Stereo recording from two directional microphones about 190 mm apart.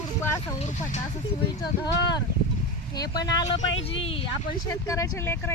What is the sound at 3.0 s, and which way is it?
Speech, 20° left (ahead or behind).